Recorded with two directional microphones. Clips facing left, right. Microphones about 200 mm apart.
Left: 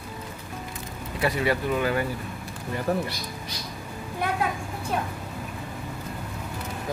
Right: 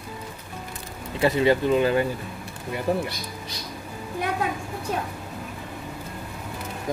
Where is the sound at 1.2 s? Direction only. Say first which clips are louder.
Right 5 dB; 25° right (ahead or behind).